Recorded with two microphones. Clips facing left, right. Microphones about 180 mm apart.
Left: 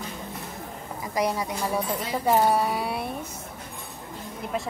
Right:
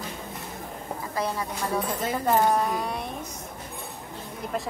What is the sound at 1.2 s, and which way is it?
Speech, 15° left (ahead or behind).